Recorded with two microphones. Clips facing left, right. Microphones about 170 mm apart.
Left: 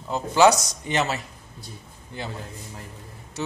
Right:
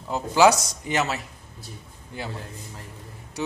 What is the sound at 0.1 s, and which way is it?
A man's voice, 5° right (ahead or behind).